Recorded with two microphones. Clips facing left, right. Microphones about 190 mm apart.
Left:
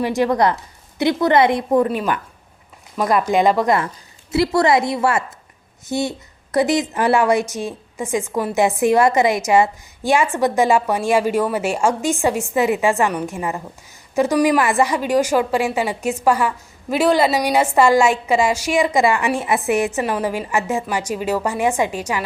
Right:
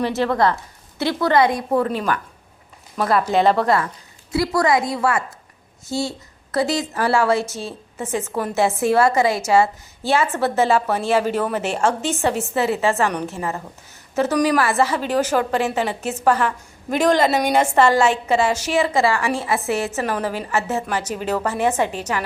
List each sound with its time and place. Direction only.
0.0 s a woman's voice: 15° left (ahead or behind)
4.3 s a woman's voice: 25° left (ahead or behind)